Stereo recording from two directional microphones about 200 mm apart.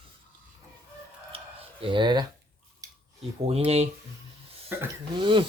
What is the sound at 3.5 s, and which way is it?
Speech, 30° right (ahead or behind).